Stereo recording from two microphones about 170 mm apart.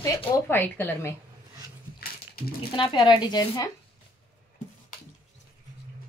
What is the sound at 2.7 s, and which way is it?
Speech, 25° left (ahead or behind).